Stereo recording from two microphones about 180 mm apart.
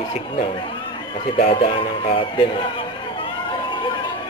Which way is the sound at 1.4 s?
35° left (ahead or behind).